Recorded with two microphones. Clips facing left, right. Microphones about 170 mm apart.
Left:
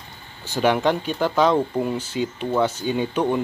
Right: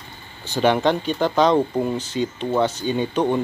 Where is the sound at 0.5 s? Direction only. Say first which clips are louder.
Right 1 dB; 10° left (ahead or behind).